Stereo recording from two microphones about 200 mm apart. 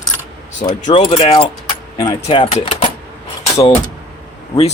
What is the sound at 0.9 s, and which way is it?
Speech, 30° left (ahead or behind).